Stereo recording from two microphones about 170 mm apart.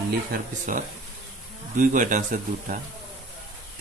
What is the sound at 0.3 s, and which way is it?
Speech, 50° right (ahead or behind).